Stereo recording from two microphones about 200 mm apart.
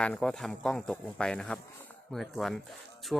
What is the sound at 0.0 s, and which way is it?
Speech, 5° left (ahead or behind).